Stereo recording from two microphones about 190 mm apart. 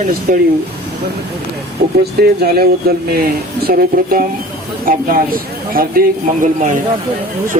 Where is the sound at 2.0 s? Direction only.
55° right (ahead or behind).